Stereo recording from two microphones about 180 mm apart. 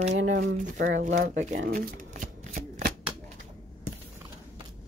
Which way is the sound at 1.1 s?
55° right (ahead or behind).